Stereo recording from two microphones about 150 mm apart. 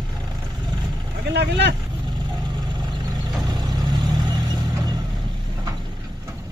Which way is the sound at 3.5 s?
25° right (ahead or behind).